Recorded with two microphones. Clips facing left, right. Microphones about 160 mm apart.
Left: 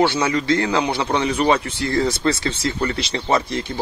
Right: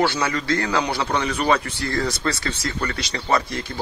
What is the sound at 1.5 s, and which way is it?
Speech, 25° left (ahead or behind).